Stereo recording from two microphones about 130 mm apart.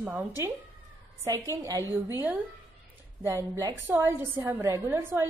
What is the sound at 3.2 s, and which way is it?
A woman's voice, 20° right (ahead or behind).